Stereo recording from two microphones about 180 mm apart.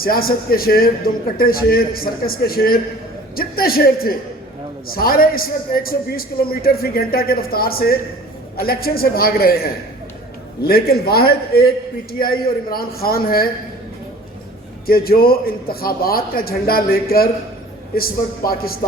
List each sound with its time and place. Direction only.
0.0 s a man's voice: 55° left (ahead or behind)
14.8 s a man's voice: 55° left (ahead or behind)